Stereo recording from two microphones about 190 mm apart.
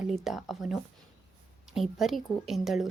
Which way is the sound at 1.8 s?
Centre (ahead or behind).